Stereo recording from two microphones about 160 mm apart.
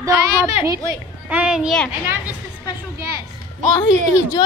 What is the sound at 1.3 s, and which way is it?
A woman's voice, 5° right (ahead or behind).